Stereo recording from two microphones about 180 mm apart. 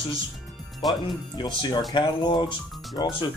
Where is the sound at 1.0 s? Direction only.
25° left (ahead or behind).